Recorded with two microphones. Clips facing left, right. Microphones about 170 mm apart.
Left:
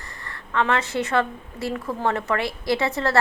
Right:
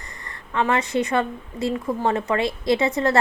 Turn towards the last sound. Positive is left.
turn(degrees=-20)  # may be behind; listen again after turning